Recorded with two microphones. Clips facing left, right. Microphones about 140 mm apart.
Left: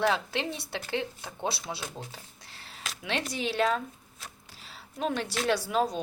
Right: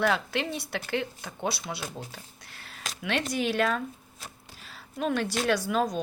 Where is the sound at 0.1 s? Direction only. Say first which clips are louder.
Right 1 dB; 25° left (ahead or behind).